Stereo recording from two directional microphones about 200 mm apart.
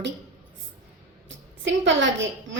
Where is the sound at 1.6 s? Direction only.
65° right (ahead or behind).